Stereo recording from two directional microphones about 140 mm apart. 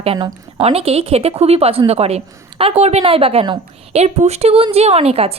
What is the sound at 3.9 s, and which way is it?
A woman's voice, 50° right (ahead or behind).